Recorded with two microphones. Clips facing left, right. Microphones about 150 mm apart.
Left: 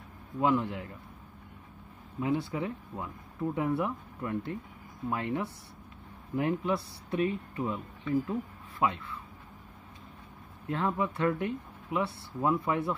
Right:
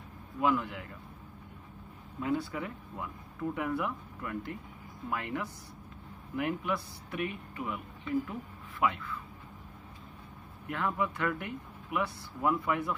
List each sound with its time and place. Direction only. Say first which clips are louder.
0.4 s speech: left 2 dB; 25° left (ahead or behind)
2.1 s speech: left 2 dB; 20° left (ahead or behind)
10.7 s speech: left 2 dB; 25° left (ahead or behind)